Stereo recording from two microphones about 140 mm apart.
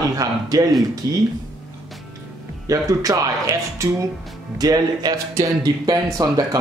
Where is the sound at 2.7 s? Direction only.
25° right (ahead or behind).